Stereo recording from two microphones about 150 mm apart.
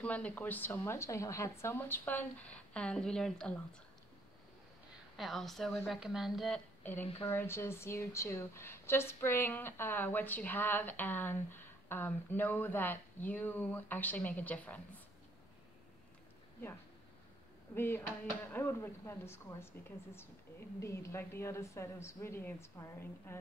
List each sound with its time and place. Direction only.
0.0 s a woman's voice: 10° left (ahead or behind)
5.1 s a woman's voice: centre (ahead or behind)
6.8 s a woman's voice: 15° left (ahead or behind)
17.7 s a woman's voice: 15° left (ahead or behind)
20.8 s a woman's voice: 20° left (ahead or behind)